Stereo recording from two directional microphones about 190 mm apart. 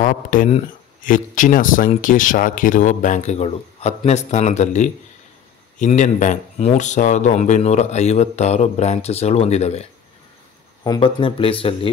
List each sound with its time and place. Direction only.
0.0 s speech: 45° left (ahead or behind)
10.8 s speech: 25° left (ahead or behind)